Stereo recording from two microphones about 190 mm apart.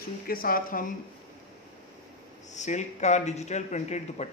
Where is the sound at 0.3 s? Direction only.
50° left (ahead or behind).